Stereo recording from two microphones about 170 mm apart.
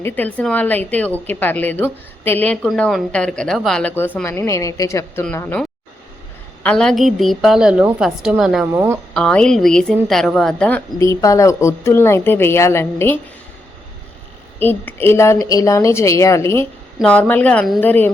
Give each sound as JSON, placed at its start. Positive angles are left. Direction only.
{"t": 0.0, "sound": "a woman's voice", "side_deg": 10}
{"t": 9.1, "sound": "a woman's voice", "side_deg": 5}
{"t": 14.6, "sound": "a woman's voice", "side_deg": 10}